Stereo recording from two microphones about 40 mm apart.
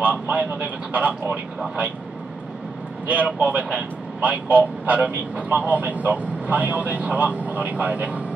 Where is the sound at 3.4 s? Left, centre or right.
Right.